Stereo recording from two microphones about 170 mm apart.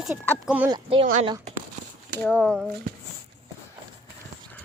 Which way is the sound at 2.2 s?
5° left (ahead or behind).